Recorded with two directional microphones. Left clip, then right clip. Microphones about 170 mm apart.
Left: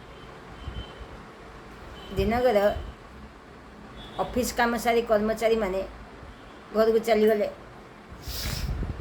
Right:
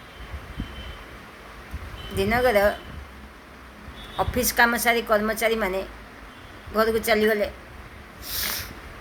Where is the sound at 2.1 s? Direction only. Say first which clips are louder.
Right 2 dB; 10° right (ahead or behind).